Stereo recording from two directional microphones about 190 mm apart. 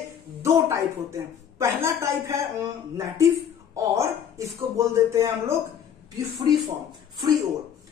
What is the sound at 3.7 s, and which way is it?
Speech, 15° right (ahead or behind).